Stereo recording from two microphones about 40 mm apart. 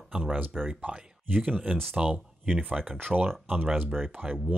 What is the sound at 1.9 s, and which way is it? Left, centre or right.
Speech, right.